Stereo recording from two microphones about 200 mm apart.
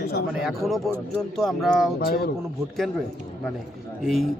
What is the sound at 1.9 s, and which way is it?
Speech, 50° left (ahead or behind).